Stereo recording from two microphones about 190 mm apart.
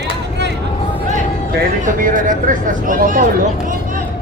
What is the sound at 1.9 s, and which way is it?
Speech, 45° right (ahead or behind).